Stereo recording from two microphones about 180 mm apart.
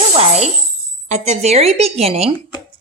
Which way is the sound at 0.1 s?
35° right (ahead or behind).